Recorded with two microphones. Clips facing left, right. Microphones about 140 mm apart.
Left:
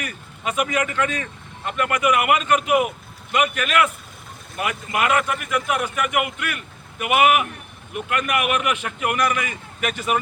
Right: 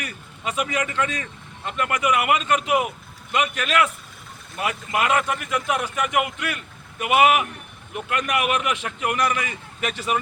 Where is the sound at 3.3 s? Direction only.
25° right (ahead or behind).